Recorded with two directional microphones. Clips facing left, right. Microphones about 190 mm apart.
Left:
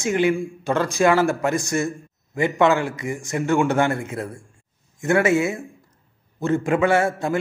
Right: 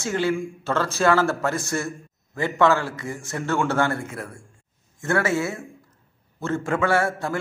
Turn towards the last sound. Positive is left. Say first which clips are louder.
# left 3 dB
turn(degrees=20)  # may be behind; listen again after turning